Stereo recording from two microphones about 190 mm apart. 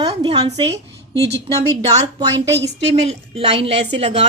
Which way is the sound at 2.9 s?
30° right (ahead or behind).